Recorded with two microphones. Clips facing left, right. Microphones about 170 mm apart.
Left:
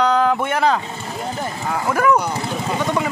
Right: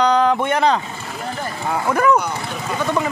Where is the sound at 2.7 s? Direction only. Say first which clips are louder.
Right 1 dB; 15° left (ahead or behind).